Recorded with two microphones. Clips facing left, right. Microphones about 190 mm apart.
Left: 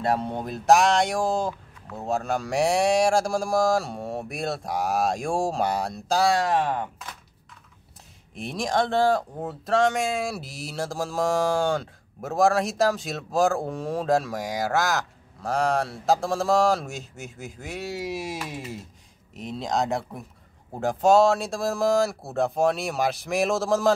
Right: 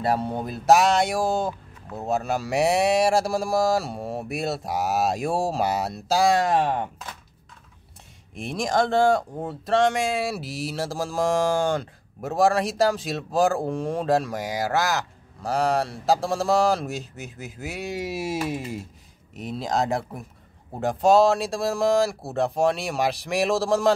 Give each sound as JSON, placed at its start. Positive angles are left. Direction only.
{"t": 0.0, "sound": "speech", "side_deg": -5}
{"t": 6.2, "sound": "speech", "side_deg": -20}
{"t": 8.4, "sound": "speech", "side_deg": 0}
{"t": 19.3, "sound": "speech", "side_deg": 0}